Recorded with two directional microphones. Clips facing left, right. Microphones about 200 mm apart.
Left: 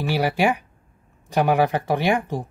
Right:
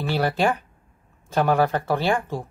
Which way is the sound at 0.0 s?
10° left (ahead or behind).